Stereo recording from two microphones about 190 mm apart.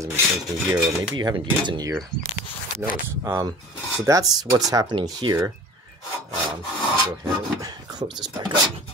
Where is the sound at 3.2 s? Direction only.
20° right (ahead or behind).